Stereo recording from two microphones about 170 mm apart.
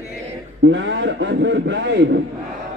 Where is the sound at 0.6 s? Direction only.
90° right.